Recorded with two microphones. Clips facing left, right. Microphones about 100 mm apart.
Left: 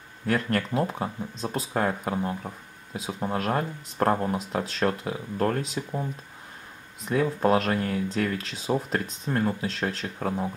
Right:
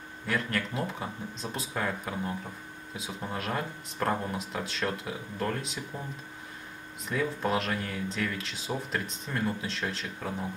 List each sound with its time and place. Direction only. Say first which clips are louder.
0.3 s speech: left 6 dB; 40° left (ahead or behind)
3.3 s speech: left 6 dB; 45° left (ahead or behind)
7.1 s speech: left 7 dB; 45° left (ahead or behind)